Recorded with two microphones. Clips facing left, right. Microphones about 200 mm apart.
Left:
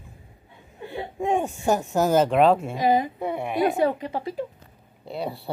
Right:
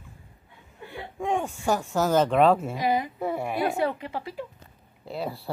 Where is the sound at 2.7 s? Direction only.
25° left (ahead or behind).